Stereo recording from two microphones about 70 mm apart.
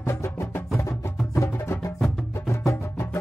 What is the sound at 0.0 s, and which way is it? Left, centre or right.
Music, left.